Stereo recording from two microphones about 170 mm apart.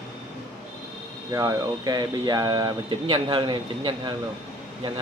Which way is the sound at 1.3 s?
20° right (ahead or behind).